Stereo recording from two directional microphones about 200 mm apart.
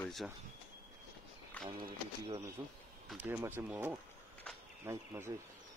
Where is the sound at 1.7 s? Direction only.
25° right (ahead or behind).